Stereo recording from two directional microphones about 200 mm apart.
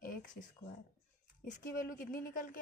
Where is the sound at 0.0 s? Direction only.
40° left (ahead or behind).